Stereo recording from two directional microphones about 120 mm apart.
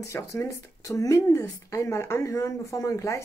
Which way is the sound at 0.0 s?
25° left (ahead or behind).